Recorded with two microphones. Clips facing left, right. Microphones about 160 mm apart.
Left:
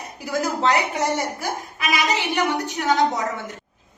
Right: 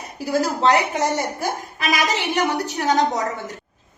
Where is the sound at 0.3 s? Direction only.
35° right (ahead or behind).